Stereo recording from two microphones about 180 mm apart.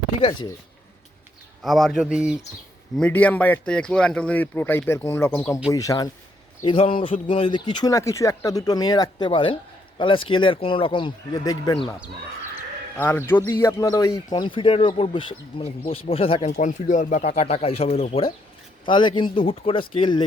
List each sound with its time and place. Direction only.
0.2 s speech: 25° left (ahead or behind)
1.6 s speech: centre (ahead or behind)
3.0 s speech: 10° left (ahead or behind)
6.7 s speech: 30° left (ahead or behind)
13.0 s speech: 10° left (ahead or behind); by 20.2 s 25° left (ahead or behind)